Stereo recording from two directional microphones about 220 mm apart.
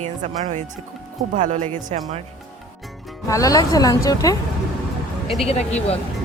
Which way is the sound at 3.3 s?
15° left (ahead or behind).